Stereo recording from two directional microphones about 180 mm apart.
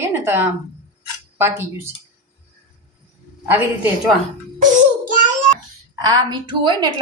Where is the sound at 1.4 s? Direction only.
15° right (ahead or behind).